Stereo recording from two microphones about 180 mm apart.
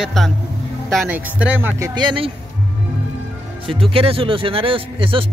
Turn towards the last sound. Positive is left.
turn(degrees=-30)  # may be behind; listen again after turning